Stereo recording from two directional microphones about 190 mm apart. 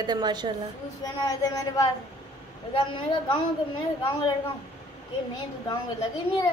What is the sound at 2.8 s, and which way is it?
Speech, 25° left (ahead or behind).